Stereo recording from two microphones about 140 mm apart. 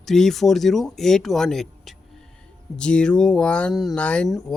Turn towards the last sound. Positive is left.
turn(degrees=5)  # may be behind; listen again after turning